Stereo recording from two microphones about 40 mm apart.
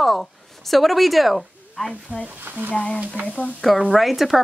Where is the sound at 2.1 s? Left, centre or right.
Right.